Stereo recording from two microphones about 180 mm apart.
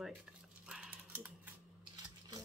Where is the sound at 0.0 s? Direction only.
5° right (ahead or behind).